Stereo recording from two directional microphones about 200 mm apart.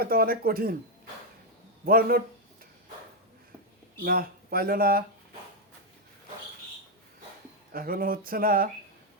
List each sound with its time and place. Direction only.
0.0 s speech: 50° right (ahead or behind)
1.8 s speech: 45° right (ahead or behind)
4.0 s speech: 50° right (ahead or behind)
7.7 s speech: 45° right (ahead or behind)